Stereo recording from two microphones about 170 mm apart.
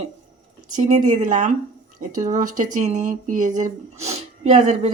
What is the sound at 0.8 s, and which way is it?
Speech, 45° right (ahead or behind).